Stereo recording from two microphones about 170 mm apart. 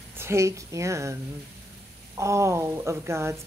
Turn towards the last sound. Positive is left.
turn(degrees=-15)  # may be behind; listen again after turning